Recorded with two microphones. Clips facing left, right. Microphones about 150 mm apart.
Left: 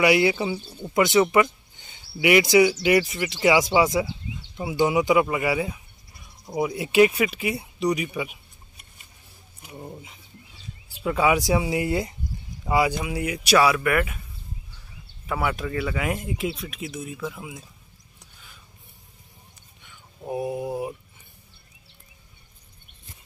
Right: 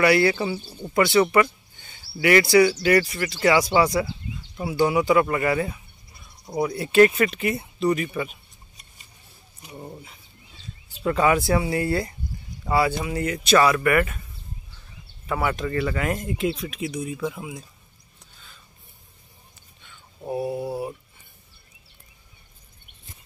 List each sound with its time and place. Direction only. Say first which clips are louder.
0.0 s speech: right 1 dB; 15° left (ahead or behind)
0.6 s speech: right 1 dB; centre (ahead or behind)
0.9 s speech: even; 20° left (ahead or behind)
9.6 s speech: even; centre (ahead or behind)
15.2 s speech: right 1 dB; 5° left (ahead or behind)
19.8 s a sound: right 1 dB; 15° left (ahead or behind)